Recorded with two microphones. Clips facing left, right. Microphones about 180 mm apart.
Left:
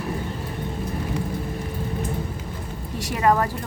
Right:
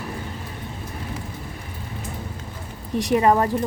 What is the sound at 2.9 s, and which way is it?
Speech, 20° right (ahead or behind).